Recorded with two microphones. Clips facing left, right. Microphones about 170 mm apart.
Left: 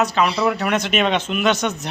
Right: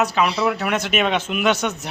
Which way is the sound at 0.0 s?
10° right (ahead or behind).